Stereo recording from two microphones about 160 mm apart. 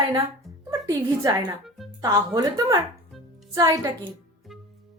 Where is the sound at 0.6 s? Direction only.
20° right (ahead or behind).